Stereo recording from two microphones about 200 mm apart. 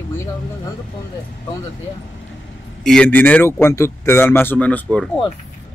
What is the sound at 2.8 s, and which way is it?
A man's voice, 5° left (ahead or behind).